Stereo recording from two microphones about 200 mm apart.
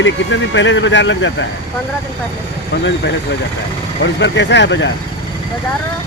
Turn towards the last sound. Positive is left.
turn(degrees=60)  # may be behind; listen again after turning